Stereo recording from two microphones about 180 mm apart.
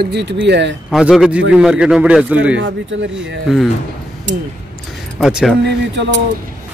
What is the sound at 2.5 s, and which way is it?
Speech, 90° right.